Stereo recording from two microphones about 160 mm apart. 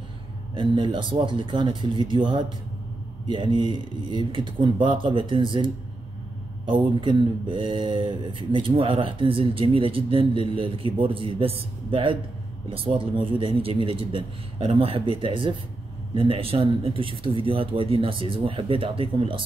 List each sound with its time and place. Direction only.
0.6 s speech: 30° right (ahead or behind)